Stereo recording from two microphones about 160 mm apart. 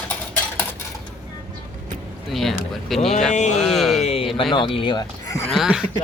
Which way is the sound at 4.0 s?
40° left (ahead or behind).